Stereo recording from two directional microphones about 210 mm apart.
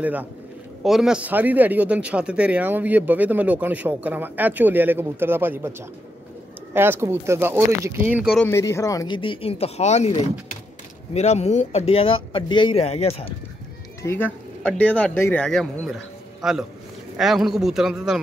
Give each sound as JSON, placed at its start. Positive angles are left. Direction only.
{"t": 0.0, "sound": "speech", "side_deg": -5}
{"t": 8.4, "sound": "speech", "side_deg": 10}
{"t": 14.0, "sound": "a man's voice", "side_deg": 10}